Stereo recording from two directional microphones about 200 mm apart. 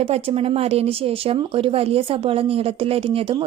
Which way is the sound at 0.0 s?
30° right (ahead or behind).